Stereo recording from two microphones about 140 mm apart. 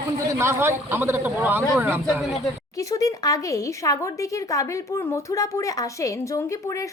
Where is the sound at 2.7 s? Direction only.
25° left (ahead or behind).